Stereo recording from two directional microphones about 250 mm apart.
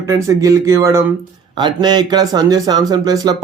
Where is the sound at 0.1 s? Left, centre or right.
Centre.